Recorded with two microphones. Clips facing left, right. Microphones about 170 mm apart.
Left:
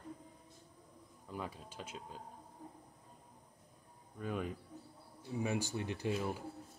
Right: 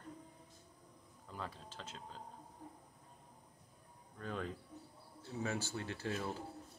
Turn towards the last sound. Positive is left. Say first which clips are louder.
# left 3 dB
turn(degrees=15)  # may be behind; listen again after turning